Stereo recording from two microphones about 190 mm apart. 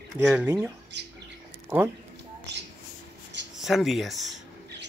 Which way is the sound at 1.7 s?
10° right (ahead or behind).